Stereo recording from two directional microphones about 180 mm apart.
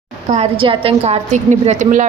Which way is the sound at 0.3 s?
30° right (ahead or behind).